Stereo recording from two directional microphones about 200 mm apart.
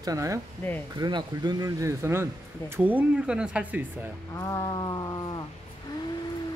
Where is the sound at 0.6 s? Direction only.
10° left (ahead or behind).